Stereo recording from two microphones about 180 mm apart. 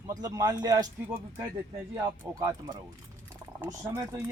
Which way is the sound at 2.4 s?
20° right (ahead or behind).